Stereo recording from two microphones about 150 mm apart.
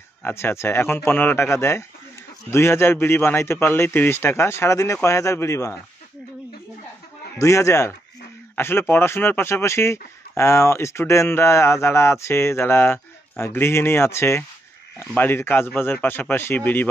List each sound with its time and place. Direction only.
0.2 s speech: 15° left (ahead or behind)
7.3 s speech: 20° left (ahead or behind)